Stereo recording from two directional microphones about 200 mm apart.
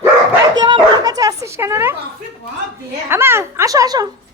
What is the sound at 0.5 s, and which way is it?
Children playing, 20° right (ahead or behind).